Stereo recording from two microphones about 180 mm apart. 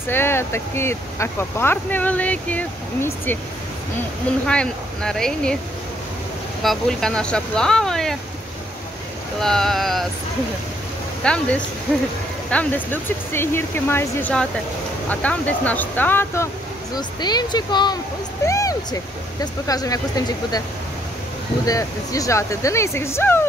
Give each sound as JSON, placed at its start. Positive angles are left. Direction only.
{"t": 0.1, "sound": "speech", "side_deg": 10}
{"t": 4.5, "sound": "speech", "side_deg": 5}
{"t": 6.6, "sound": "speech", "side_deg": 0}
{"t": 9.4, "sound": "speech", "side_deg": 0}
{"t": 11.2, "sound": "speech", "side_deg": 5}
{"t": 16.9, "sound": "speech", "side_deg": 20}
{"t": 21.6, "sound": "speech", "side_deg": 20}